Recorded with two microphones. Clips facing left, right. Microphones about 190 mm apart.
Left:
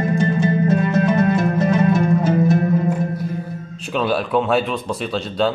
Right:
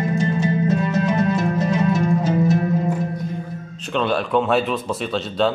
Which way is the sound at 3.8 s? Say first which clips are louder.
Left 1 dB; 5° left (ahead or behind).